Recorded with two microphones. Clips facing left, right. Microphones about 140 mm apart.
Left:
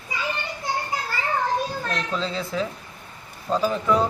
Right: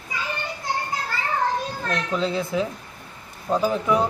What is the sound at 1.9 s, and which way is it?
Speech, 15° right (ahead or behind).